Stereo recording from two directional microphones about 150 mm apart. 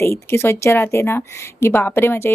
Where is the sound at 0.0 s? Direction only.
15° left (ahead or behind).